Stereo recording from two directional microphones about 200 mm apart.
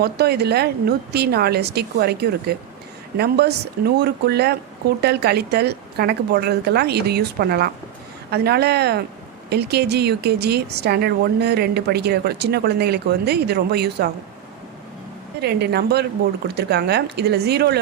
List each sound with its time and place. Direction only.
0.0 s a woman's voice: 55° right (ahead or behind)
15.4 s a woman's voice: 55° right (ahead or behind)